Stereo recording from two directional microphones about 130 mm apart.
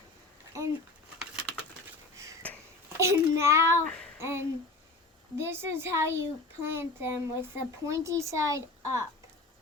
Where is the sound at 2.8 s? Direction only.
20° right (ahead or behind).